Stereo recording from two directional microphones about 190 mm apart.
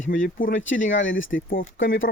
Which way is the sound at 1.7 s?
90° left.